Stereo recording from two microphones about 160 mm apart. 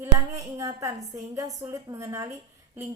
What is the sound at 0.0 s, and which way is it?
A woman's voice, 20° right (ahead or behind).